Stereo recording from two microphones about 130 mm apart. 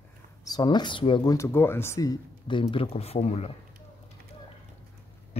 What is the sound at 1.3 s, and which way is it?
Speech, 20° left (ahead or behind).